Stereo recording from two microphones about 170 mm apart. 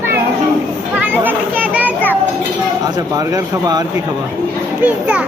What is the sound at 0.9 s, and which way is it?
Children playing, 10° right (ahead or behind).